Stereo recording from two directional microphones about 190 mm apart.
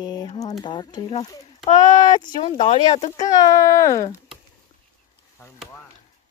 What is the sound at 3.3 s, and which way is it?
Speech, 15° left (ahead or behind).